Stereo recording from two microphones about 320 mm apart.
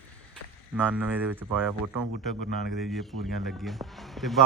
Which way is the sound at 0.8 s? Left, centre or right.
Centre.